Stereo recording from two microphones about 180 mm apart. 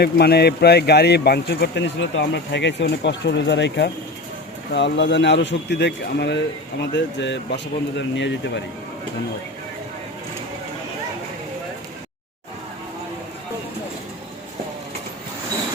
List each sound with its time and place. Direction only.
0.0 s speech: 65° left (ahead or behind); by 8.6 s 90° left